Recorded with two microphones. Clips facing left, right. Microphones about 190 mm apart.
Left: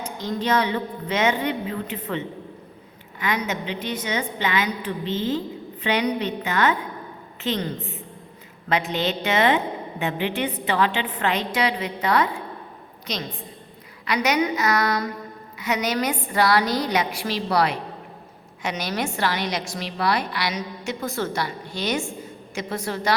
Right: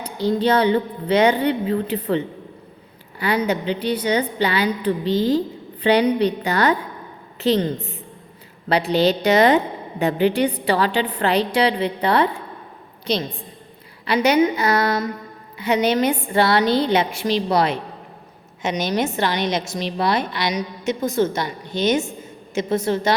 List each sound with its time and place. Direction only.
0.0 s a woman's voice: 30° right (ahead or behind)